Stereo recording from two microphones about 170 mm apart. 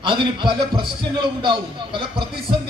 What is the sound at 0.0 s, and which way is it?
Speech, 30° right (ahead or behind).